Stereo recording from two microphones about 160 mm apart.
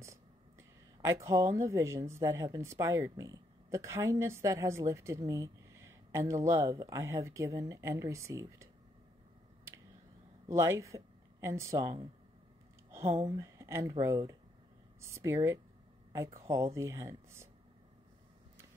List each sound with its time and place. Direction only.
0.0 s speech: 20° right (ahead or behind)
10.5 s speech: 15° right (ahead or behind)
13.0 s speech: 40° right (ahead or behind)
13.3 s speech: 20° right (ahead or behind)